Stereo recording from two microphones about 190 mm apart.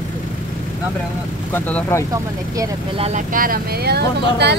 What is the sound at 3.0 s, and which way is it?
Speech, 40° right (ahead or behind).